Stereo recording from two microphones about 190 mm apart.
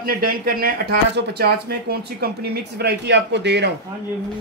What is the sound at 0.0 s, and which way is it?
Speech, 50° right (ahead or behind).